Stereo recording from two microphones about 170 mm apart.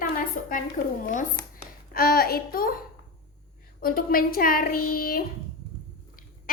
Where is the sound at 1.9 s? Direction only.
60° left (ahead or behind).